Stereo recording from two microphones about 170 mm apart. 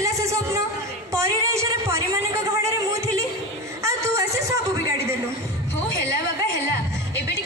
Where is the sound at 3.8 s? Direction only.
20° right (ahead or behind).